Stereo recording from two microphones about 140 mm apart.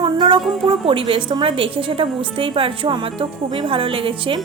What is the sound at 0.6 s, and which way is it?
Speech, 40° right (ahead or behind).